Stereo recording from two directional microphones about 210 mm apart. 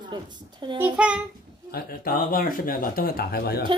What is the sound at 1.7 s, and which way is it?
Speech, 45° left (ahead or behind).